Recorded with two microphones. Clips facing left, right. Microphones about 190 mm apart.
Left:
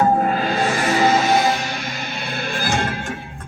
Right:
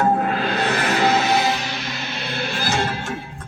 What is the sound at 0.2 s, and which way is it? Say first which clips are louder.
Music: left 2 dB; 45° left (ahead or behind).